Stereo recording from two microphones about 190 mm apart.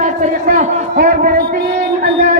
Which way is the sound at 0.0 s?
40° right (ahead or behind).